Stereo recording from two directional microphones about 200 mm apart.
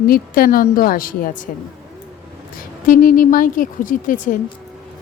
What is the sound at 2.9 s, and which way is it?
Speech, 45° left (ahead or behind).